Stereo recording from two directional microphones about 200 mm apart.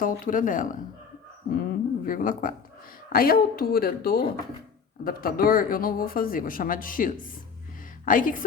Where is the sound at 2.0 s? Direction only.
45° left (ahead or behind).